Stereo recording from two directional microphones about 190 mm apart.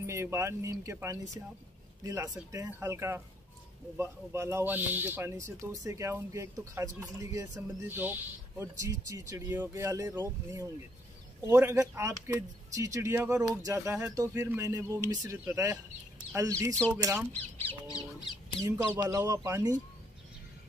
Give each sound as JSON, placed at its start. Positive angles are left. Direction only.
{"t": 0.0, "sound": "a man's voice", "side_deg": -15}
{"t": 17.3, "sound": "speech", "side_deg": 10}
{"t": 18.9, "sound": "a man's voice", "side_deg": -15}